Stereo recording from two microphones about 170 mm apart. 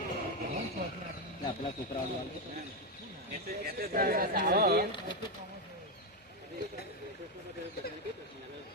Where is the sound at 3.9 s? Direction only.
60° right (ahead or behind).